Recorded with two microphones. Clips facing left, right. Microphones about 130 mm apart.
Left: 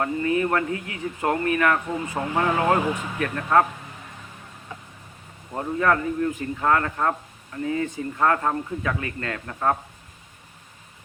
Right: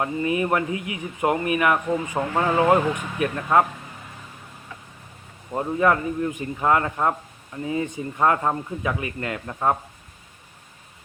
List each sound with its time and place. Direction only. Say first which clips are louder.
0.0 s speech: even; 15° right (ahead or behind)
5.5 s speech: right 2 dB; 20° right (ahead or behind)